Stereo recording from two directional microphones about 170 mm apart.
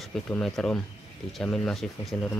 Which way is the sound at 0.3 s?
5° left (ahead or behind).